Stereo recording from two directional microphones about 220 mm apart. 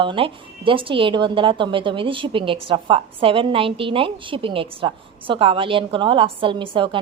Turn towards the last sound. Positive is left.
turn(degrees=-20)  # may be behind; listen again after turning